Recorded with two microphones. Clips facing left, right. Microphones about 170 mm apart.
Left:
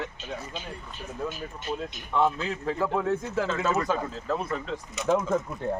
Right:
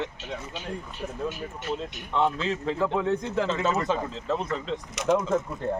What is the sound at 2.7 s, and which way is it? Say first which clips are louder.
Speech: even; 5° left (ahead or behind).